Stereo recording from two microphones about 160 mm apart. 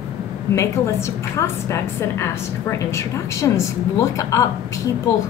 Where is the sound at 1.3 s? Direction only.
15° left (ahead or behind).